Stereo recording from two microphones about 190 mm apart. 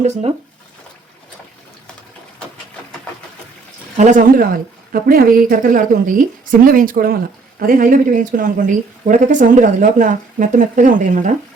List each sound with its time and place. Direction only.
0.0 s speech: 35° right (ahead or behind)
3.9 s speech: 40° right (ahead or behind)